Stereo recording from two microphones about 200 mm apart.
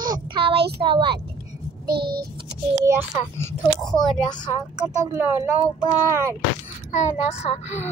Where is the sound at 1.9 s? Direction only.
50° right (ahead or behind).